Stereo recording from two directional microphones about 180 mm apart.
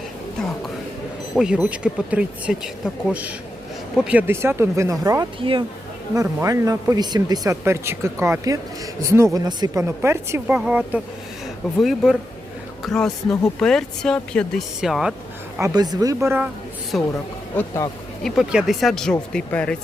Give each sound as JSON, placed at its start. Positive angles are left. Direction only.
{"t": 1.3, "sound": "speech", "side_deg": -5}
{"t": 15.5, "sound": "speech", "side_deg": -20}
{"t": 16.9, "sound": "speech", "side_deg": 0}
{"t": 18.2, "sound": "speech", "side_deg": 0}